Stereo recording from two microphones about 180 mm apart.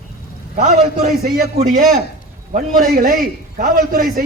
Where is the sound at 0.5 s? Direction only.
45° right (ahead or behind).